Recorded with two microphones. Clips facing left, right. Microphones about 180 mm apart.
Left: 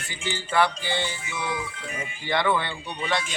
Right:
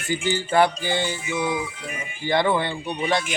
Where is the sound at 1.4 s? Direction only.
15° right (ahead or behind).